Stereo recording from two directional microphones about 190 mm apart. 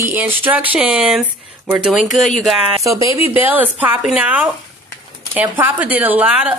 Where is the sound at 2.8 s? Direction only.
15° right (ahead or behind).